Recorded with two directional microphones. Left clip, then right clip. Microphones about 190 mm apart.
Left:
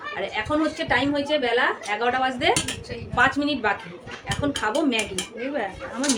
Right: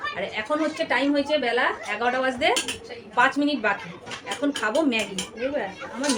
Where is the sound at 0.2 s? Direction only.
10° left (ahead or behind).